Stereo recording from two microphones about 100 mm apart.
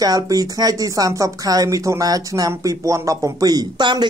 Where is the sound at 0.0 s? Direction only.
40° right (ahead or behind).